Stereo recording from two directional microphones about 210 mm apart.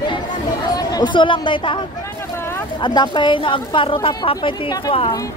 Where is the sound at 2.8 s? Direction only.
20° left (ahead or behind).